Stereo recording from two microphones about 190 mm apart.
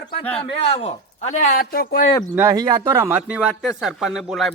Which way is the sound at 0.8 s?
35° left (ahead or behind).